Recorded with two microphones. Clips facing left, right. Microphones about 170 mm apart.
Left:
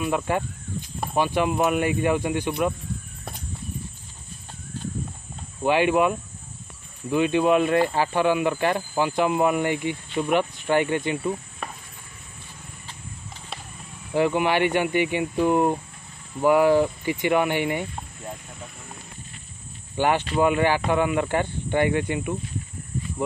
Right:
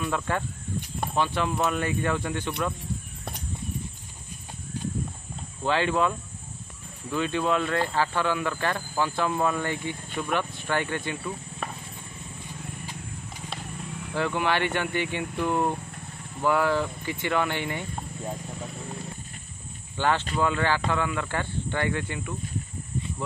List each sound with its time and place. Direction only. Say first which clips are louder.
0.0 s speech: left 4 dB; 15° left (ahead or behind)
4.7 s clip-clop: right 1 dB; 15° right (ahead or behind)
5.6 s speech: left 5 dB; 15° left (ahead or behind)
11.6 s stir: right 4 dB; centre (ahead or behind)
14.1 s speech: left 5 dB; 15° left (ahead or behind)
20.0 s speech: left 4 dB; 15° left (ahead or behind)